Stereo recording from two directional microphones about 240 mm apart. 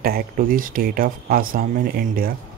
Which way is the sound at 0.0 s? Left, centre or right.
Right.